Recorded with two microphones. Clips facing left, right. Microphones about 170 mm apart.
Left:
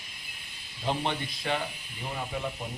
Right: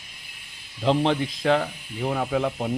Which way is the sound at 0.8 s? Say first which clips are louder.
Right 9 dB; 90° right.